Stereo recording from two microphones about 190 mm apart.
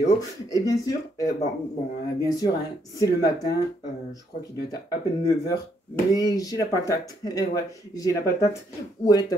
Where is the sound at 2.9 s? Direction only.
20° left (ahead or behind).